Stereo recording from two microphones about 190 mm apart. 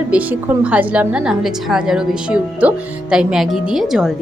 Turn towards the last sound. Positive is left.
turn(degrees=0)  # may be behind; listen again after turning